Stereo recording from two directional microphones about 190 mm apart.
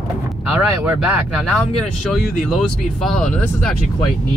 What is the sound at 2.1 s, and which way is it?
Speech, 5° left (ahead or behind).